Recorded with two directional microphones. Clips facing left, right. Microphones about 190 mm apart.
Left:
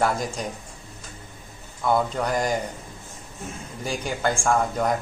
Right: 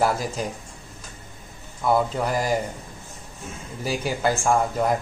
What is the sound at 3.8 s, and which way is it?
A man's voice, 5° right (ahead or behind).